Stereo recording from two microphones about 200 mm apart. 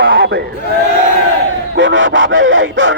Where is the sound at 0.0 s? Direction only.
55° right (ahead or behind).